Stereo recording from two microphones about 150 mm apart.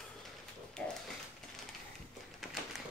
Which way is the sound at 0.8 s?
5° left (ahead or behind).